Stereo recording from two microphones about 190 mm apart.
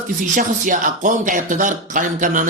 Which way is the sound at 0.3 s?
45° right (ahead or behind).